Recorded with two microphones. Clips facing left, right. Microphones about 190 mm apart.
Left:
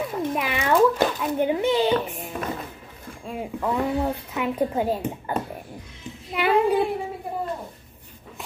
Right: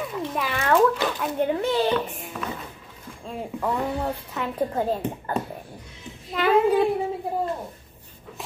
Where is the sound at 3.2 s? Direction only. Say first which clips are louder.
Left 1 dB; 5° left (ahead or behind).